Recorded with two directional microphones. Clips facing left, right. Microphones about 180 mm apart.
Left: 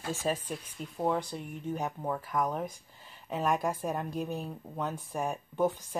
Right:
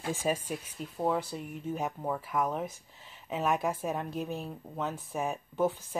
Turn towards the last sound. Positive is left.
turn(degrees=-5)  # may be behind; listen again after turning